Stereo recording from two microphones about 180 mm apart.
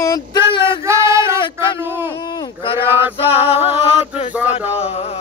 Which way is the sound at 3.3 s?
35° left (ahead or behind).